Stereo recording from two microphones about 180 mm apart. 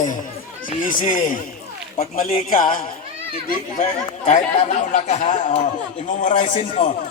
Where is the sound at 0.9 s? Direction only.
45° left (ahead or behind).